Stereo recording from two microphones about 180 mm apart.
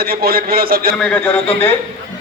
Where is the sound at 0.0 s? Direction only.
60° right (ahead or behind).